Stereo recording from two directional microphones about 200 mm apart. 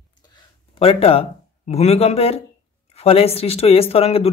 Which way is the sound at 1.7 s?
30° left (ahead or behind).